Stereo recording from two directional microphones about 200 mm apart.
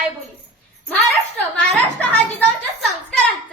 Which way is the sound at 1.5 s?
5° left (ahead or behind).